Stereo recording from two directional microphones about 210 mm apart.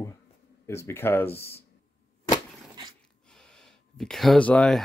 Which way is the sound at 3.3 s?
Centre (ahead or behind).